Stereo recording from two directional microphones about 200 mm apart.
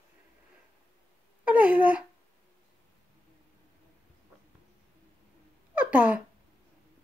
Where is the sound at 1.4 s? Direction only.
5° right (ahead or behind).